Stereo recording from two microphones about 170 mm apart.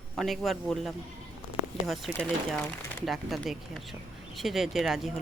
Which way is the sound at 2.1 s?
5° right (ahead or behind).